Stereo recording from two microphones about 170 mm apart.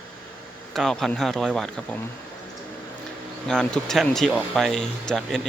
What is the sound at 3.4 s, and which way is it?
Speech, 5° left (ahead or behind).